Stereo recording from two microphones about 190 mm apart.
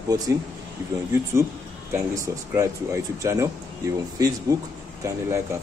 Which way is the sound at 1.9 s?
15° right (ahead or behind).